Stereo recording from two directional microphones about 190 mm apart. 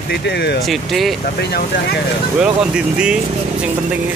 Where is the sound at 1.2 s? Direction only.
55° left (ahead or behind).